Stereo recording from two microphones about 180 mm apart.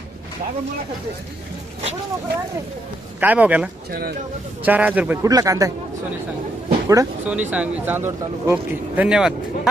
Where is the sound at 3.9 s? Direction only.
60° right (ahead or behind).